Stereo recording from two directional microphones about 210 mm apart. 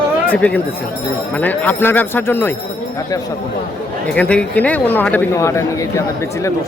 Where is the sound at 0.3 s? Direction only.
5° left (ahead or behind).